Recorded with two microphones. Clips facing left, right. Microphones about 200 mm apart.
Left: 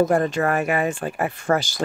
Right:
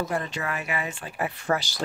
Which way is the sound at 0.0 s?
50° left (ahead or behind).